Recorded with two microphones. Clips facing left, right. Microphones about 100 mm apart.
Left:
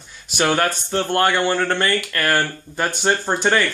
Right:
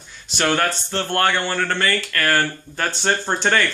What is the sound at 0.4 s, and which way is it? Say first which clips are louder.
Speech: left 1 dB; 10° left (ahead or behind).